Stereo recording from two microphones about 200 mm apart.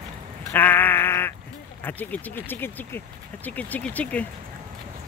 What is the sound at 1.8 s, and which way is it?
Speech, 10° left (ahead or behind).